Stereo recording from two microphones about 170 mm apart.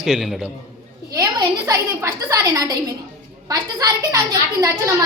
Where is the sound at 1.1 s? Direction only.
20° right (ahead or behind).